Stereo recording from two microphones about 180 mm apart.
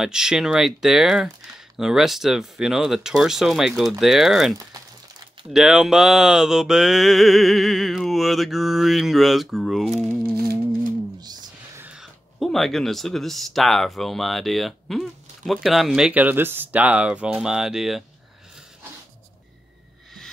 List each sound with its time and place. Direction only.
0.0 s speech: 5° right (ahead or behind)
9.9 s crumpling: centre (ahead or behind)
10.3 s music: 60° right (ahead or behind)
11.1 s a sound: 20° right (ahead or behind)
11.8 s speech: 5° right (ahead or behind)